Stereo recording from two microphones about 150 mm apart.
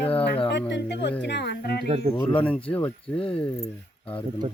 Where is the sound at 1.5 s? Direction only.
90° left.